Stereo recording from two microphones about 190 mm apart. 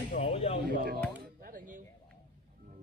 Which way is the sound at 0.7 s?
55° right (ahead or behind).